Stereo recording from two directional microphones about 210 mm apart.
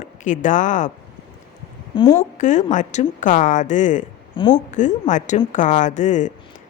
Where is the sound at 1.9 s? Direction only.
25° left (ahead or behind).